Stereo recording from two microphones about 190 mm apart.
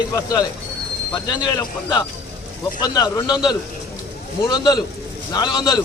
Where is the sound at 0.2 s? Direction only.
20° left (ahead or behind).